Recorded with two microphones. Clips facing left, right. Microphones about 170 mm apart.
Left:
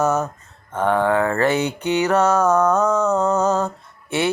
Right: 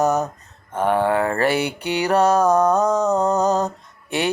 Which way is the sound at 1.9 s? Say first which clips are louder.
Right 1 dB; 35° right (ahead or behind).